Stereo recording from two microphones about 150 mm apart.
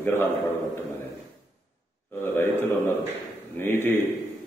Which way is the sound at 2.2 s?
15° left (ahead or behind).